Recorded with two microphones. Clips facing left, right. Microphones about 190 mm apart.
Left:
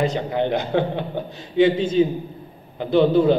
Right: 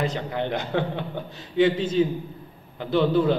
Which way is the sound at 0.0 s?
15° left (ahead or behind).